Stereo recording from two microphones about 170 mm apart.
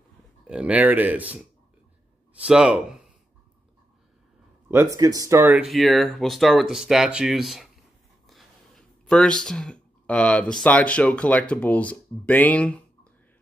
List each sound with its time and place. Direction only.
0.5 s speech: 10° right (ahead or behind)
4.6 s speech: 15° right (ahead or behind)
5.6 s speech: centre (ahead or behind)